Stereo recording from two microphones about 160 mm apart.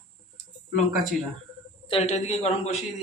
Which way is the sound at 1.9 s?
40° left (ahead or behind).